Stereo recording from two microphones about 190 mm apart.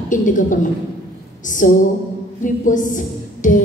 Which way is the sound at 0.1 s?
45° left (ahead or behind).